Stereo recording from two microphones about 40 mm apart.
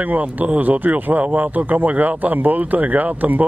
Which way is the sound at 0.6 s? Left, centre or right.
Right.